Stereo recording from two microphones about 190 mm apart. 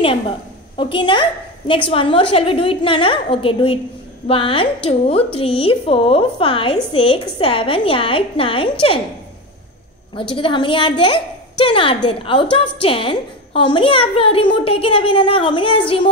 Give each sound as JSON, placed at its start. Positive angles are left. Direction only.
{"t": 0.7, "sound": "a woman's voice", "side_deg": 25}
{"t": 10.1, "sound": "a woman's voice", "side_deg": 25}